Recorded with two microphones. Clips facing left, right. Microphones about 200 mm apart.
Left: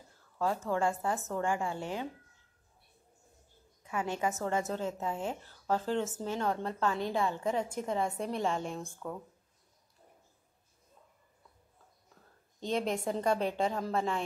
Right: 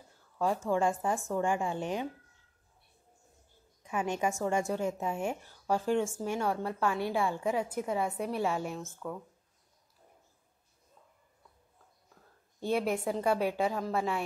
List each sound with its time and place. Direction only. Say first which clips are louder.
0.7 s a woman's voice: right 3 dB; 15° right (ahead or behind)
3.8 s a woman's voice: right 2 dB; 15° right (ahead or behind); by 9.2 s centre (ahead or behind)
12.5 s a woman's voice: right 2 dB; 10° right (ahead or behind)